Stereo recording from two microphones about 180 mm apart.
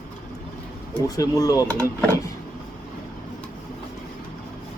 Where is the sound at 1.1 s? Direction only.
20° left (ahead or behind).